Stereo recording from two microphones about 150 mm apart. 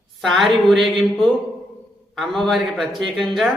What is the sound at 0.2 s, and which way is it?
A man's voice, centre (ahead or behind).